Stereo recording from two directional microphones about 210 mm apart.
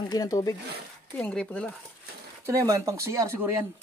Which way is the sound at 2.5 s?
15° right (ahead or behind).